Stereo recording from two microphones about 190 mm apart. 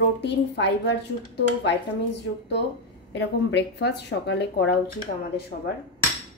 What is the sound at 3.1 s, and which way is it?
Speech, 65° left (ahead or behind).